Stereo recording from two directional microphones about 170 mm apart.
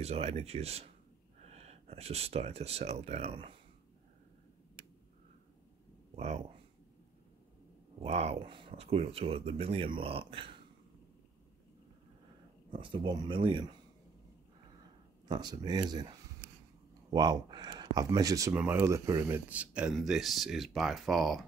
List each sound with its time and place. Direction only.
0.0 s speech: 35° right (ahead or behind)
6.1 s speech: 40° right (ahead or behind)
8.0 s speech: 40° right (ahead or behind)
12.7 s speech: 30° right (ahead or behind)
15.2 s speech: 25° right (ahead or behind); by 21.5 s centre (ahead or behind)